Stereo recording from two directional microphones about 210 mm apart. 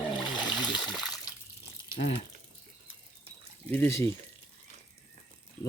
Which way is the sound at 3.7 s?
10° left (ahead or behind).